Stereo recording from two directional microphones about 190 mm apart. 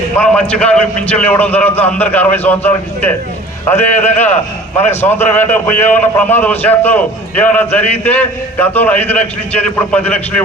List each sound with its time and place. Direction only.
0.2 s a man's voice: 5° left (ahead or behind)